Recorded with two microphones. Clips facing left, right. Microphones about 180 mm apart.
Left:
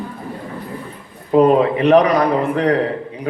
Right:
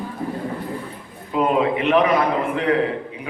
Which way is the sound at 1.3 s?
40° left (ahead or behind).